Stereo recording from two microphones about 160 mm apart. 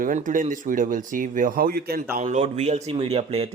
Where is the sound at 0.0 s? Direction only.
55° right (ahead or behind).